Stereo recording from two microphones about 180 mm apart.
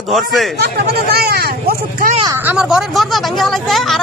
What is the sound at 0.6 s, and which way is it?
Speech, 60° right (ahead or behind).